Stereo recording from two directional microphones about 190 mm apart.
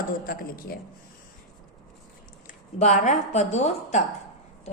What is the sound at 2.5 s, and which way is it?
A woman's voice, 40° left (ahead or behind).